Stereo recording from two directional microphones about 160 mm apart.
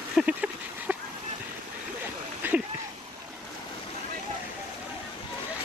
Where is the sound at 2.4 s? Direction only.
10° right (ahead or behind).